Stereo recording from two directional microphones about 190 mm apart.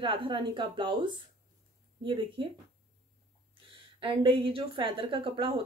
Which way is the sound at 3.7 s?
25° right (ahead or behind).